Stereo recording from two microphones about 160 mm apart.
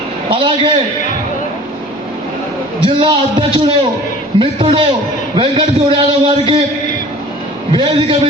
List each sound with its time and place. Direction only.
0.3 s a man's voice: 35° right (ahead or behind)
2.8 s a man's voice: 30° right (ahead or behind)
7.7 s a man's voice: 30° right (ahead or behind)